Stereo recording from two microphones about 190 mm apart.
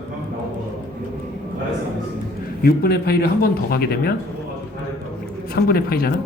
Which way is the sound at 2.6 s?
55° left (ahead or behind).